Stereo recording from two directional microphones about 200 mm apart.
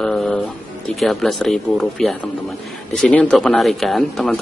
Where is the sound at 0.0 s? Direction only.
5° left (ahead or behind).